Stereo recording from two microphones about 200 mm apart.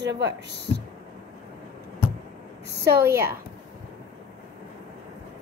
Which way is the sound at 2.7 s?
55° right (ahead or behind).